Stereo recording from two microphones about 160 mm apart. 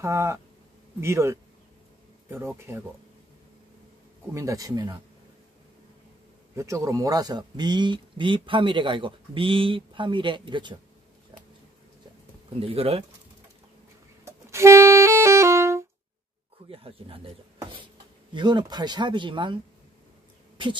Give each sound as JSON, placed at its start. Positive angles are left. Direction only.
{"t": 0.0, "sound": "speech", "side_deg": -15}
{"t": 4.3, "sound": "speech", "side_deg": -20}
{"t": 6.5, "sound": "speech", "side_deg": -20}
{"t": 12.5, "sound": "speech", "side_deg": -35}
{"t": 14.2, "sound": "music", "side_deg": -20}
{"t": 16.6, "sound": "speech", "side_deg": -35}
{"t": 18.3, "sound": "speech", "side_deg": -30}
{"t": 20.6, "sound": "speech", "side_deg": -30}